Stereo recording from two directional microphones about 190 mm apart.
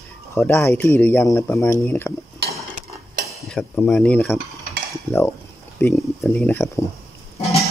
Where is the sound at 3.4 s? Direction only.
5° left (ahead or behind).